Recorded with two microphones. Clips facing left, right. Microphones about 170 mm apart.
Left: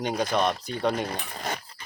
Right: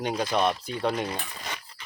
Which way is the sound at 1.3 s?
50° left (ahead or behind).